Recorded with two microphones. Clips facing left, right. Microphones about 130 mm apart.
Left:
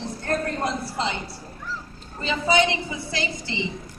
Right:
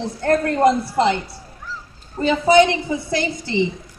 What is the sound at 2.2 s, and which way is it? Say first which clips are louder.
A woman's voice: right 8 dB; 50° right (ahead or behind).